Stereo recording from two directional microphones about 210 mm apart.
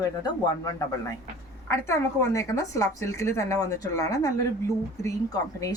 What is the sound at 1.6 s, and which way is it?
A woman's voice, 15° left (ahead or behind).